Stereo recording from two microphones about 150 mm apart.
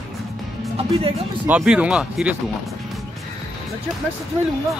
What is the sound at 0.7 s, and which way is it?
Speech, 40° right (ahead or behind).